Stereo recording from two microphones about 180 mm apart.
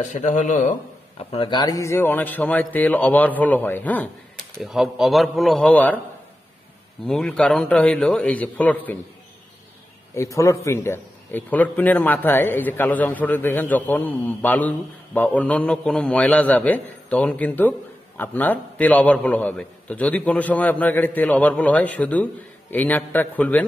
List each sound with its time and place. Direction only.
0.0 s speech: 45° left (ahead or behind)
1.3 s a man's voice: 25° left (ahead or behind); by 4.1 s 10° left (ahead or behind)
4.6 s a man's voice: centre (ahead or behind)
7.1 s a man's voice: 5° left (ahead or behind)
10.1 s a man's voice: 15° left (ahead or behind)